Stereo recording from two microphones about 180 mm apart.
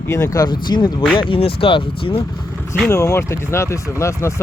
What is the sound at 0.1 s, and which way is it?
Speech, 15° left (ahead or behind).